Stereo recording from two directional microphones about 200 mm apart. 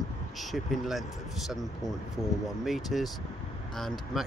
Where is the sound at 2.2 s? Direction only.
15° left (ahead or behind).